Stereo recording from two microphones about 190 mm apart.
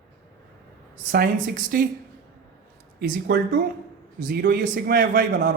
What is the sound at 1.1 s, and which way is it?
Speech, 50° right (ahead or behind).